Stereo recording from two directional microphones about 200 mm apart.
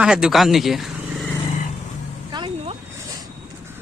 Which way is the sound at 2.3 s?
25° right (ahead or behind).